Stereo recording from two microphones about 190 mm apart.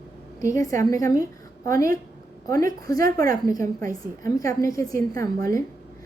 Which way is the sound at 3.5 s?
15° left (ahead or behind).